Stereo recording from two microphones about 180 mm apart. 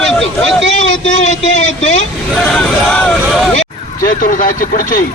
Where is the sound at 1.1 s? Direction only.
40° left (ahead or behind).